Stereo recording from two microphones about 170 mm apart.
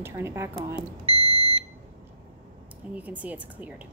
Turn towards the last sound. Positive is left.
turn(degrees=-10)  # may be behind; listen again after turning